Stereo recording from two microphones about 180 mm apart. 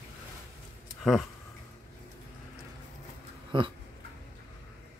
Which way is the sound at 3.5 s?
25° right (ahead or behind).